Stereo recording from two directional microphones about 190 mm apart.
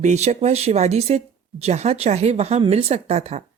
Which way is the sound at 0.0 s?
35° right (ahead or behind).